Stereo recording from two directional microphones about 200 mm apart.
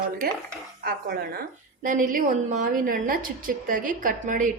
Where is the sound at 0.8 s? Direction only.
50° right (ahead or behind).